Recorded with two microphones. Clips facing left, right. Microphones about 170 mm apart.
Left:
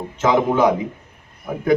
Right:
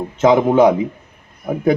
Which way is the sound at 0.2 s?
25° right (ahead or behind).